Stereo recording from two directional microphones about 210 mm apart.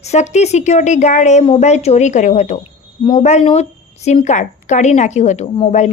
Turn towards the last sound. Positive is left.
turn(degrees=35)  # may be behind; listen again after turning